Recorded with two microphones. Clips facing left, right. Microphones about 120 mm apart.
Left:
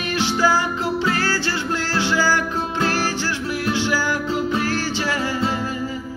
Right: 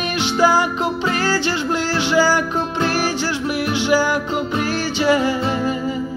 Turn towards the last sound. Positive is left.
turn(degrees=-15)  # may be behind; listen again after turning